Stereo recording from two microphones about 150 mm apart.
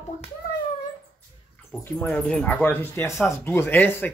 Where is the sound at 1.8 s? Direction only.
10° left (ahead or behind).